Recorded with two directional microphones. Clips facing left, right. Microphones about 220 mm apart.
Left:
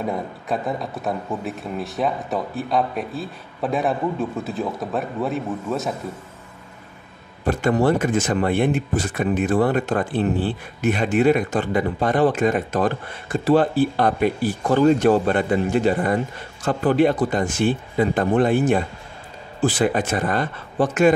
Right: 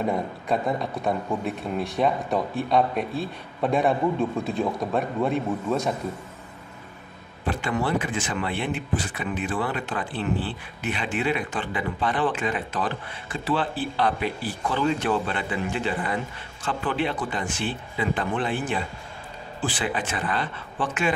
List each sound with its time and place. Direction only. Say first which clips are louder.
0.0 s a man's voice: even; centre (ahead or behind)
7.4 s speech: left 8 dB; 45° left (ahead or behind)